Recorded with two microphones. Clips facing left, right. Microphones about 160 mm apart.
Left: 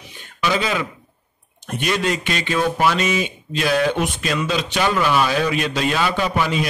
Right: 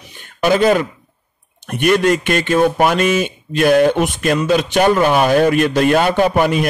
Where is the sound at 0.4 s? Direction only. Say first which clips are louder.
Right 8 dB; 50° right (ahead or behind).